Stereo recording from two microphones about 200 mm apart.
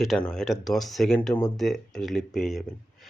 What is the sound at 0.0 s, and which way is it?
Speech, centre (ahead or behind).